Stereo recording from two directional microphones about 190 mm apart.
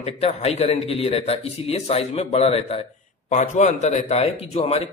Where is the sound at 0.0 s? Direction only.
35° left (ahead or behind).